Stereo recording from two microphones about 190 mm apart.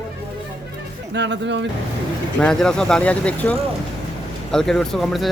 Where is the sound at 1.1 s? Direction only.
65° right (ahead or behind).